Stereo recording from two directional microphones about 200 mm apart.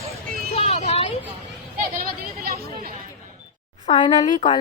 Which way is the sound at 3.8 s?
30° left (ahead or behind).